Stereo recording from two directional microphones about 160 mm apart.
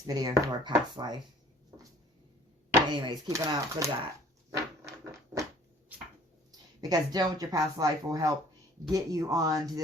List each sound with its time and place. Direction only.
0.1 s speech: 25° right (ahead or behind)
2.9 s speech: 30° right (ahead or behind)
4.5 s a sound: 20° right (ahead or behind)
6.8 s speech: 25° right (ahead or behind)